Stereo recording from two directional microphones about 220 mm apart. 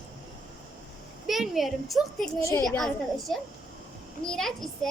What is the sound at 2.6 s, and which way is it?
A woman's voice, centre (ahead or behind).